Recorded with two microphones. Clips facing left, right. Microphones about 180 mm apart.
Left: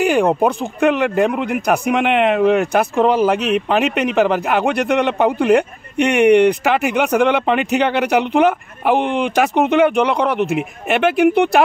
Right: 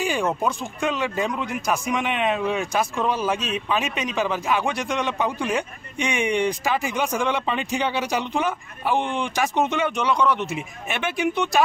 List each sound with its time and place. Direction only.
0.0 s a man's voice: 60° left (ahead or behind)